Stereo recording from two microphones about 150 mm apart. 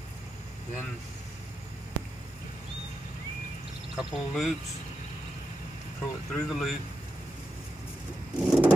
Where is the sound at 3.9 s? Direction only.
Centre (ahead or behind).